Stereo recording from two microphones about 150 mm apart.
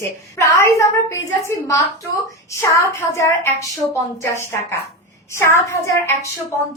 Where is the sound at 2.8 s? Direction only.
20° left (ahead or behind).